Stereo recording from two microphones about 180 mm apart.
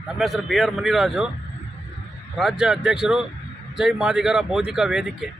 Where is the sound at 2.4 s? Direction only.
Centre (ahead or behind).